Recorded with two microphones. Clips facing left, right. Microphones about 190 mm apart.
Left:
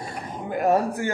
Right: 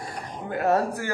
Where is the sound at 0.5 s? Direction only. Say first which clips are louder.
Left 2 dB; 15° left (ahead or behind).